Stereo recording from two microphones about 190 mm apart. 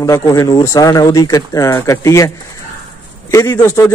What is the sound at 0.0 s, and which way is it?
A man's voice, 15° left (ahead or behind).